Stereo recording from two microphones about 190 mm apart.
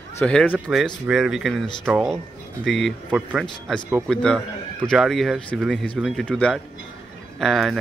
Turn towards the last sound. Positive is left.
turn(degrees=0)  # may be behind; listen again after turning